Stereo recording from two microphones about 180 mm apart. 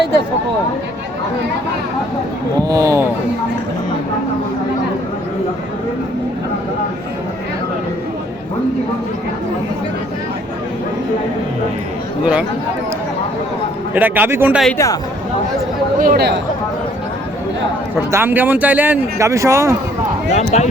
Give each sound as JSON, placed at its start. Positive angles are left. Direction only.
{"t": 2.6, "sound": "a man's voice", "side_deg": -15}
{"t": 12.2, "sound": "a man's voice", "side_deg": -5}
{"t": 13.9, "sound": "a man's voice", "side_deg": -10}
{"t": 16.0, "sound": "speech", "side_deg": -55}
{"t": 18.1, "sound": "a man's voice", "side_deg": -10}
{"t": 20.3, "sound": "speech", "side_deg": 40}